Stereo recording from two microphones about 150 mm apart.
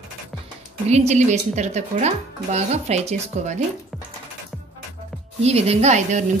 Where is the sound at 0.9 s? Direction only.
50° right (ahead or behind).